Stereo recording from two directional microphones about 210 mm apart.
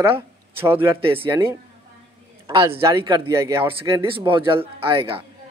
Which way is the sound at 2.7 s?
15° right (ahead or behind).